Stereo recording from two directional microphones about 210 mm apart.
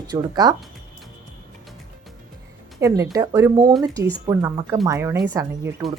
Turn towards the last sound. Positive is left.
turn(degrees=-15)  # may be behind; listen again after turning